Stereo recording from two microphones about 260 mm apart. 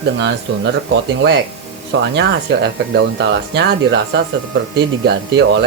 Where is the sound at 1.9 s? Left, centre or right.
Right.